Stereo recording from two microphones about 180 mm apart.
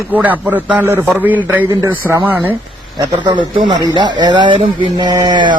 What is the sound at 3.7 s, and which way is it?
Speech, 25° right (ahead or behind).